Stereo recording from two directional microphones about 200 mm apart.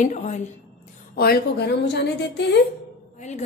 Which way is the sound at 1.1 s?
50° left (ahead or behind).